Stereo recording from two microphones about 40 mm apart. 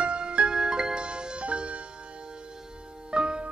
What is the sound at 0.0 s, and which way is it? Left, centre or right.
Music, right.